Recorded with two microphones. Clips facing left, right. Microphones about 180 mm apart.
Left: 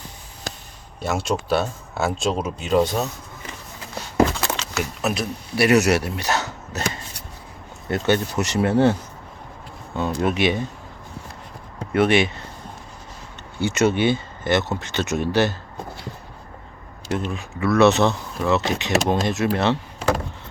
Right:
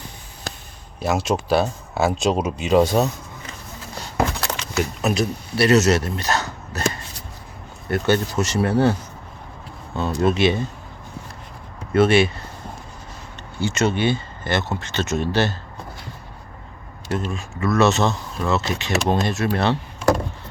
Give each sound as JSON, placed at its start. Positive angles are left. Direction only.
{"t": 1.0, "sound": "speech", "side_deg": 0}
{"t": 4.4, "sound": "a sound", "side_deg": 0}
{"t": 5.5, "sound": "speech", "side_deg": 15}
{"t": 11.9, "sound": "speech", "side_deg": 15}
{"t": 13.6, "sound": "speech", "side_deg": 15}
{"t": 17.1, "sound": "speech", "side_deg": 15}